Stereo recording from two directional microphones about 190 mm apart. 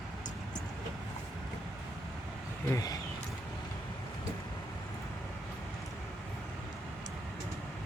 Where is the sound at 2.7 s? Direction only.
20° left (ahead or behind).